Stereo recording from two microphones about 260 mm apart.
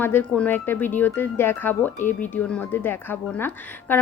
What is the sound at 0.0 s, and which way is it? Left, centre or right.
Speech, centre.